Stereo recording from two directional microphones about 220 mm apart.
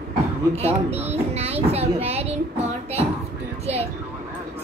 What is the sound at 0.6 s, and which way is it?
Speech, 30° right (ahead or behind).